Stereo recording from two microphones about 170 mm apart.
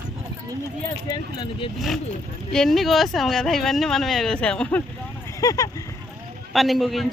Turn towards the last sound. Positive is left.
turn(degrees=0)  # may be behind; listen again after turning